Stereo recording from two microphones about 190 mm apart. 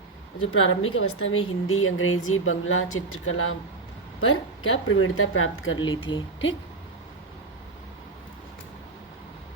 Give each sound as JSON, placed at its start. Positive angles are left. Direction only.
{"t": 0.3, "sound": "speech", "side_deg": 90}
{"t": 6.1, "sound": "speech", "side_deg": 25}